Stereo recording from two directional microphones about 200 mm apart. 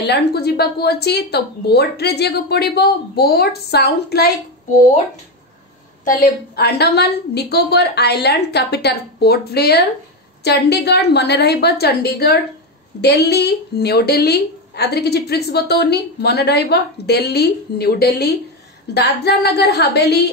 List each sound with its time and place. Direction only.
0.0 s a woman's voice: 55° left (ahead or behind)
6.0 s a woman's voice: 55° left (ahead or behind)